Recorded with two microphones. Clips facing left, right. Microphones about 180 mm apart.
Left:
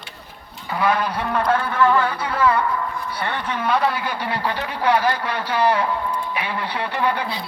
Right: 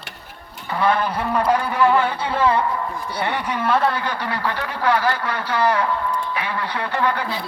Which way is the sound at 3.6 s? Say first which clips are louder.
Right 1 dB; centre (ahead or behind).